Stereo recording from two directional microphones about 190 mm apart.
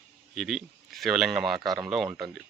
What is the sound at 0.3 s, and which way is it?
Speech, centre (ahead or behind).